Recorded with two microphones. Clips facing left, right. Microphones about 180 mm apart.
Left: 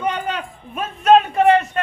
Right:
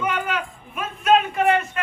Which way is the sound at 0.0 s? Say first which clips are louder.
Left 2 dB; 35° left (ahead or behind).